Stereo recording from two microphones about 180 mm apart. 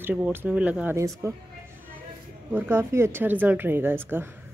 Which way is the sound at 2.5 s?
10° right (ahead or behind).